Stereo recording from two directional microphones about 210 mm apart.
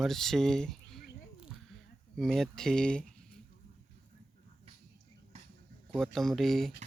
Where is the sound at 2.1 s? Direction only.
Centre (ahead or behind).